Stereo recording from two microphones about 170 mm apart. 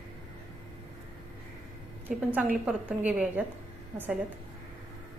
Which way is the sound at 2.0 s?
10° right (ahead or behind).